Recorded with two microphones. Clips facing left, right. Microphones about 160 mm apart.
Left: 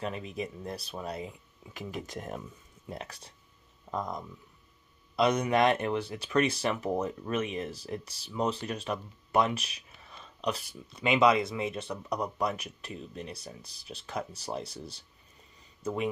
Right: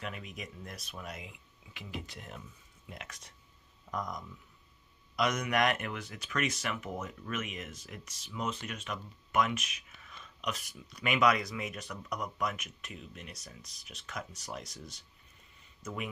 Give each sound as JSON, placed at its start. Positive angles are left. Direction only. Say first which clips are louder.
{"t": 0.0, "sound": "speech", "louder": "left 7 dB", "side_deg": 30}
{"t": 2.9, "sound": "speech", "louder": "left 7 dB", "side_deg": 35}